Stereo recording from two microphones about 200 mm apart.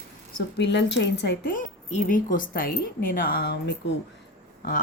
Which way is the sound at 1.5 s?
40° left (ahead or behind).